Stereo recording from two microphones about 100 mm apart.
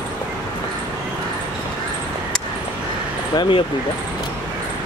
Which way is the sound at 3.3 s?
50° left (ahead or behind).